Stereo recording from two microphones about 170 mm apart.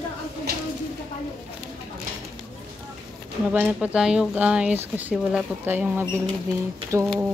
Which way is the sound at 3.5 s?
10° right (ahead or behind).